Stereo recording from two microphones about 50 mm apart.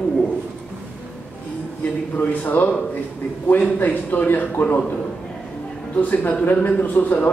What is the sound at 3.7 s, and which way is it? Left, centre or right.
A man's voice, left.